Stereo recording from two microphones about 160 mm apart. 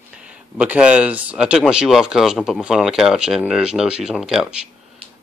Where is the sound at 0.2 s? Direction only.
5° right (ahead or behind).